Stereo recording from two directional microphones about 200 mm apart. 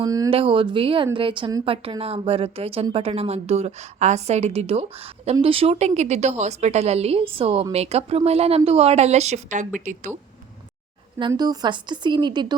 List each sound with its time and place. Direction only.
0.0 s a woman's voice: 20° right (ahead or behind); by 10.1 s 40° right (ahead or behind)
11.2 s a woman's voice: 20° right (ahead or behind)